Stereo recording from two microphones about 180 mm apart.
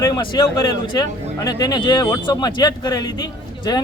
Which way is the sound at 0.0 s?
25° left (ahead or behind).